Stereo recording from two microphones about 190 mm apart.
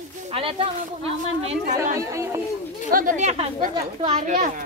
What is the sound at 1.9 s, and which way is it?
Speech, 15° right (ahead or behind).